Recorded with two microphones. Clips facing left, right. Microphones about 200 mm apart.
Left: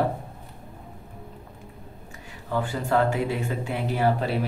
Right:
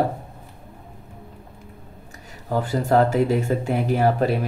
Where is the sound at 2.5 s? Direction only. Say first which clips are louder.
Right 5 dB; 40° right (ahead or behind).